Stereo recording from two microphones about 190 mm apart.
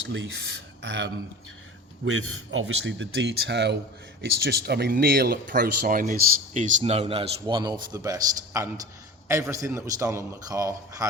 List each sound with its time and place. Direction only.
0.1 s speech: 75° right (ahead or behind)
2.2 s a man's voice: 90° right; by 11.0 s 20° right (ahead or behind)